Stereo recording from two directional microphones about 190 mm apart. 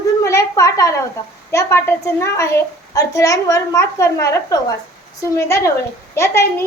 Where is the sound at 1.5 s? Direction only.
15° left (ahead or behind).